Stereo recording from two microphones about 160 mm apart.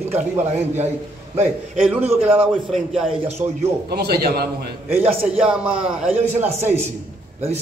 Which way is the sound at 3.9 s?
85° right.